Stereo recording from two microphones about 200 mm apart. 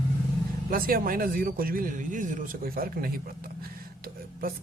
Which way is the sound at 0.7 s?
45° right (ahead or behind).